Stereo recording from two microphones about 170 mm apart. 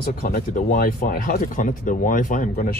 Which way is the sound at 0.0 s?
60° left (ahead or behind).